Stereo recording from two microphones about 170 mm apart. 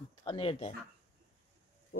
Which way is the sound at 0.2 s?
30° left (ahead or behind).